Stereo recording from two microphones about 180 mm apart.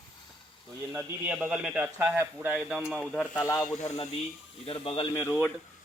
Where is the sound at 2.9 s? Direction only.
5° left (ahead or behind).